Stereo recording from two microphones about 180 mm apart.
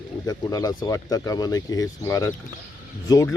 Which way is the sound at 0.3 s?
20° left (ahead or behind).